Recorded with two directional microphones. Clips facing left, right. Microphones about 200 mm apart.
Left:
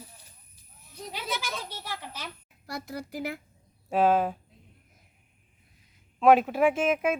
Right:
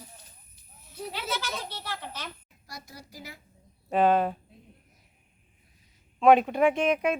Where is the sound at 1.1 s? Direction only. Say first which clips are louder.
Right 1 dB; 15° left (ahead or behind).